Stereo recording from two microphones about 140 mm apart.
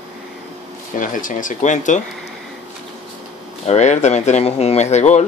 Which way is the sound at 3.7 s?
55° left (ahead or behind).